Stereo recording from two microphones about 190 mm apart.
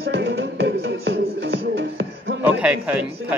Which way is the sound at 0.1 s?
65° right (ahead or behind).